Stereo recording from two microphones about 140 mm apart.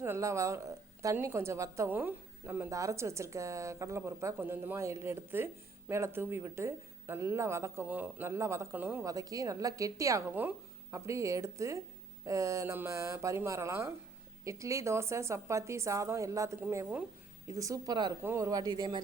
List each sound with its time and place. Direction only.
0.0 s a woman's voice: 20° right (ahead or behind)
9.0 s a woman's voice: 25° right (ahead or behind)
17.5 s a woman's voice: 25° right (ahead or behind)
18.2 s a woman's voice: 20° right (ahead or behind)